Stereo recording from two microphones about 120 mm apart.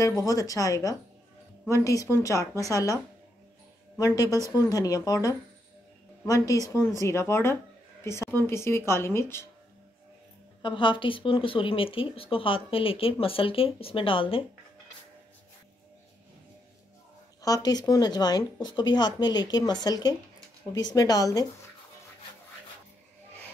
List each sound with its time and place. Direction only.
0.0 s speech: 30° left (ahead or behind)
4.0 s speech: 30° left (ahead or behind)
8.0 s a sound: 25° left (ahead or behind)
8.5 s speech: 20° left (ahead or behind)
10.6 s speech: 40° left (ahead or behind)
17.4 s speech: 30° left (ahead or behind)